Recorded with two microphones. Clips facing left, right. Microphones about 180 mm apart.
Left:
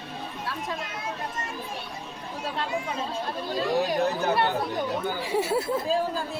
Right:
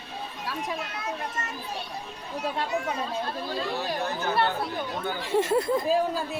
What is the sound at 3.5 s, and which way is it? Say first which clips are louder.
Speech: left 9 dB; 15° left (ahead or behind).